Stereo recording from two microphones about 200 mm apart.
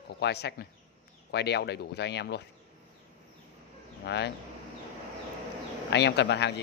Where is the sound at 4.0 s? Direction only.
60° left (ahead or behind).